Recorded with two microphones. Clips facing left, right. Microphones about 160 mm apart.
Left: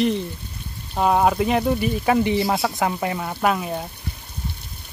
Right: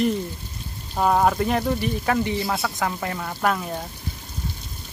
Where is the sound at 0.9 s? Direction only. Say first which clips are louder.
Left 1 dB; 10° left (ahead or behind).